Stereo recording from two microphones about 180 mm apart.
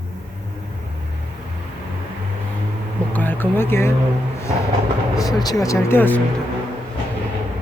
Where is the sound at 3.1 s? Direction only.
10° left (ahead or behind).